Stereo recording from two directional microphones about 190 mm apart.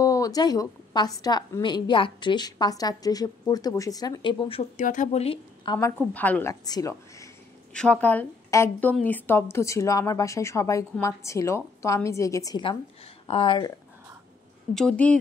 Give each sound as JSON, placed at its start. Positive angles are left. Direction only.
{"t": 0.0, "sound": "a woman's voice", "side_deg": 15}
{"t": 4.8, "sound": "a woman's voice", "side_deg": 40}
{"t": 5.8, "sound": "speech", "side_deg": 10}
{"t": 6.5, "sound": "speech", "side_deg": 20}
{"t": 7.7, "sound": "a woman's voice", "side_deg": 5}
{"t": 14.7, "sound": "a woman's voice", "side_deg": 5}